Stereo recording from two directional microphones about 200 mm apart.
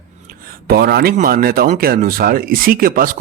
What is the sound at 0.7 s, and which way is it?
Speech, 50° right (ahead or behind).